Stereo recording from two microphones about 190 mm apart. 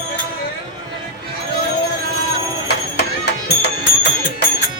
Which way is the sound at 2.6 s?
60° left (ahead or behind).